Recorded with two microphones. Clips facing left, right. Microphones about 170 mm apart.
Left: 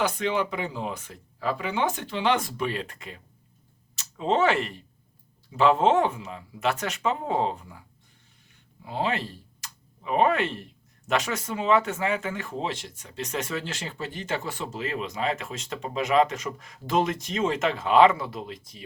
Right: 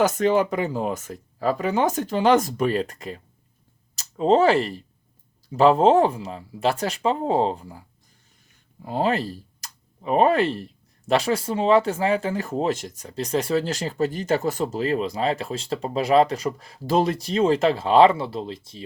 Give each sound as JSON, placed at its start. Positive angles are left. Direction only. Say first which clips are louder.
{"t": 0.0, "sound": "speech", "louder": "right 7 dB", "side_deg": -45}